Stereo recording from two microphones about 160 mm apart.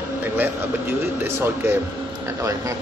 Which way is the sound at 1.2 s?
15° right (ahead or behind).